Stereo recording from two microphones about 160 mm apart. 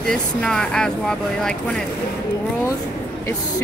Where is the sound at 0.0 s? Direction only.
5° left (ahead or behind).